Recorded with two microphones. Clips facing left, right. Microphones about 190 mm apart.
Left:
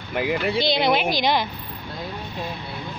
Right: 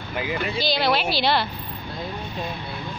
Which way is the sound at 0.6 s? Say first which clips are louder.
Left 1 dB; 20° left (ahead or behind).